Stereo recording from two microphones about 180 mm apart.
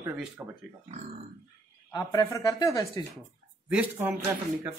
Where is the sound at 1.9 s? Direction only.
20° left (ahead or behind).